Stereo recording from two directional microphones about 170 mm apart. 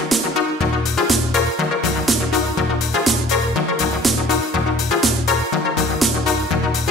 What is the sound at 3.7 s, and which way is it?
Music, centre (ahead or behind).